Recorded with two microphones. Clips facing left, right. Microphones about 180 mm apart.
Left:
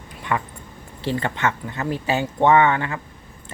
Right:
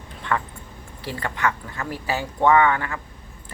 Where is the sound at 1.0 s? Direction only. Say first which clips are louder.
Left 3 dB; 25° left (ahead or behind).